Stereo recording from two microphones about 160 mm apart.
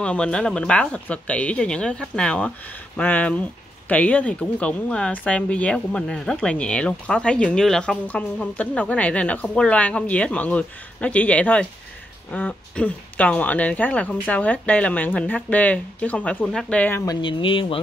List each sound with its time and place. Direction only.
0.0 s speech: 5° left (ahead or behind)
17.0 s speech: 25° left (ahead or behind)